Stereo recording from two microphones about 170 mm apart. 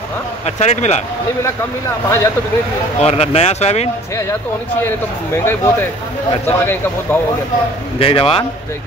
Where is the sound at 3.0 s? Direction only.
40° left (ahead or behind).